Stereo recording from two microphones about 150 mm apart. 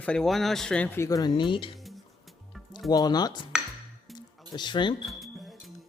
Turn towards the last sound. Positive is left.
turn(degrees=0)  # may be behind; listen again after turning